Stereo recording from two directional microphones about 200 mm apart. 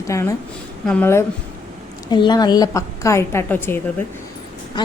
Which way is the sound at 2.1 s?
20° left (ahead or behind).